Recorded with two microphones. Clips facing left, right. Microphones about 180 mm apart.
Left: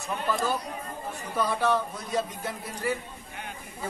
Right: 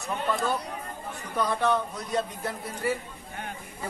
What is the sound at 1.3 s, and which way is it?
A man's voice, 5° left (ahead or behind).